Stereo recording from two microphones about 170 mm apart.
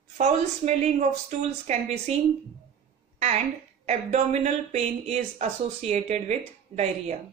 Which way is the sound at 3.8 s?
40° right (ahead or behind).